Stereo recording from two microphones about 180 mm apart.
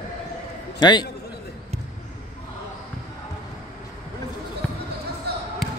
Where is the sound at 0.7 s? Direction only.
25° left (ahead or behind).